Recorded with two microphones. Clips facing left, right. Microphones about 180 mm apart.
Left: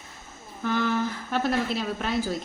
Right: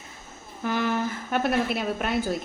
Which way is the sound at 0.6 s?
10° right (ahead or behind).